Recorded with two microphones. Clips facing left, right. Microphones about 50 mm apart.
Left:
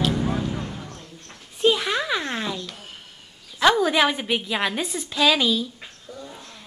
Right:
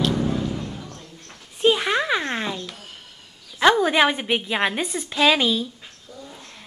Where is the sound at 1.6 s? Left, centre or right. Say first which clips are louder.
Right 2 dB; centre.